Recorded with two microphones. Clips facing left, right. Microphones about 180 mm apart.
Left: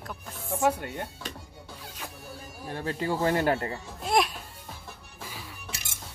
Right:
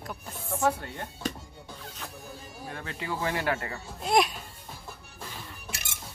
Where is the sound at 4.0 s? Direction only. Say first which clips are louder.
Right 1 dB; centre (ahead or behind).